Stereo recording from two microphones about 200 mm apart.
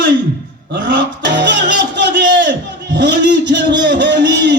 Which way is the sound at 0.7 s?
60° right (ahead or behind).